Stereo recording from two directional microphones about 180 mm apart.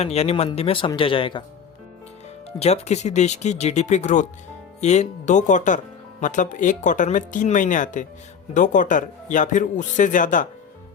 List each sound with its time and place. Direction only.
0.0 s speech: 35° left (ahead or behind)
2.6 s speech: 40° left (ahead or behind)